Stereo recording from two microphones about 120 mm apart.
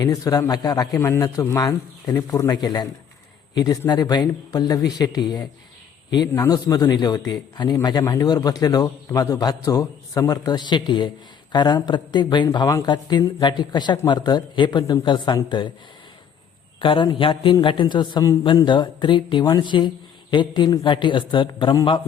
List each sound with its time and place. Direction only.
0.0 s a man's voice: 30° left (ahead or behind)
16.8 s a man's voice: 45° left (ahead or behind)